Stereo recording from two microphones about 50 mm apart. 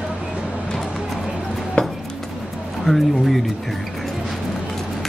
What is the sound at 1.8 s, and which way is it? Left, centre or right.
Dishes, left.